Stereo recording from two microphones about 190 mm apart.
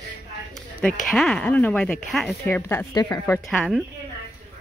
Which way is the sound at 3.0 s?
20° left (ahead or behind).